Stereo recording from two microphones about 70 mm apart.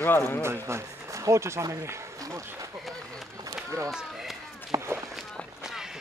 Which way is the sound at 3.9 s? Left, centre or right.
Centre.